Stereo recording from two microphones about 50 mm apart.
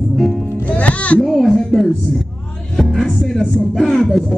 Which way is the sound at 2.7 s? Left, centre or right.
Centre.